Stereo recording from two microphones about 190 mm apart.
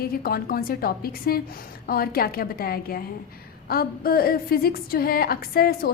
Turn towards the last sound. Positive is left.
turn(degrees=50)  # may be behind; listen again after turning